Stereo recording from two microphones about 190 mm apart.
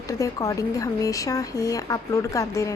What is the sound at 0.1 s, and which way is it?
A woman's voice, 15° left (ahead or behind).